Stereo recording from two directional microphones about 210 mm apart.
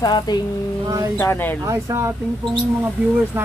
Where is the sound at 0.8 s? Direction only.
15° right (ahead or behind).